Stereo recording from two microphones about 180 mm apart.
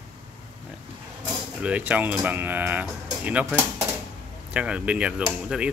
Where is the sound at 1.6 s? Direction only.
5° right (ahead or behind).